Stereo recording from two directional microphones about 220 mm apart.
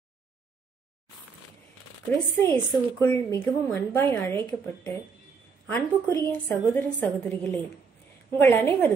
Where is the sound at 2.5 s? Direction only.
10° left (ahead or behind).